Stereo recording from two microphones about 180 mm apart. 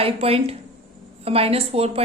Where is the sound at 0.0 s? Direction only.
35° right (ahead or behind).